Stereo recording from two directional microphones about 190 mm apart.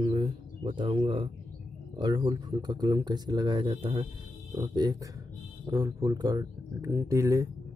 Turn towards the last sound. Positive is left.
turn(degrees=-15)  # may be behind; listen again after turning